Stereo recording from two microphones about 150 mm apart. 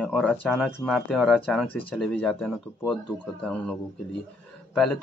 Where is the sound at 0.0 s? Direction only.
5° left (ahead or behind).